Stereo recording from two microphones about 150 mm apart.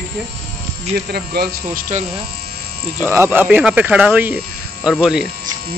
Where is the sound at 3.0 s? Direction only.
15° right (ahead or behind).